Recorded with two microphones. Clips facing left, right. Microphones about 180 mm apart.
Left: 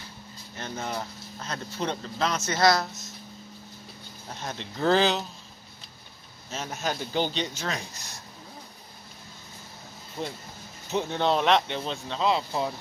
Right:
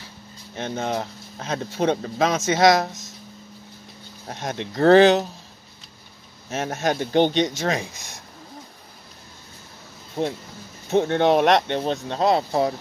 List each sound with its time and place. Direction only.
0.6 s speech: 70° right (ahead or behind); by 3.1 s 90° right
4.3 s speech: 75° right (ahead or behind)
6.5 s speech: 70° right (ahead or behind)
7.3 s speech: 80° right
10.2 s speech: 40° right (ahead or behind)
10.9 s speech: 55° right (ahead or behind)